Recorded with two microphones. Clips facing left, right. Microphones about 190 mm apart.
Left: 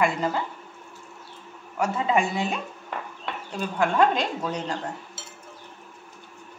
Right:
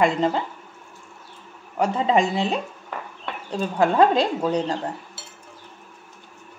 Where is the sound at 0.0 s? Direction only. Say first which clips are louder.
Right 4 dB; 30° right (ahead or behind).